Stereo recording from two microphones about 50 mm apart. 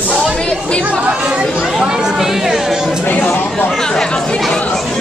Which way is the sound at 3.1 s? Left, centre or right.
Left.